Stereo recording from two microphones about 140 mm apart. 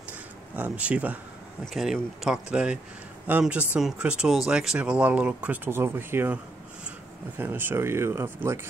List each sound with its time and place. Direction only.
0.6 s speech: 10° right (ahead or behind)